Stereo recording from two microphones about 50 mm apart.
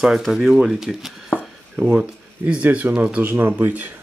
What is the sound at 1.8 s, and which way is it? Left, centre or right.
Speech, right.